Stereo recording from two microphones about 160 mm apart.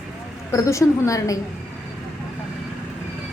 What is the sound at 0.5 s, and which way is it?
Speech, 20° left (ahead or behind).